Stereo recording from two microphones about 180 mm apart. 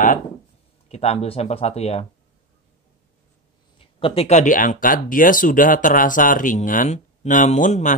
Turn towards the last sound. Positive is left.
turn(degrees=45)  # may be behind; listen again after turning